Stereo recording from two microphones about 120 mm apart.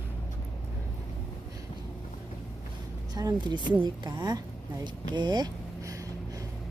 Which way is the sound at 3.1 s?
35° right (ahead or behind).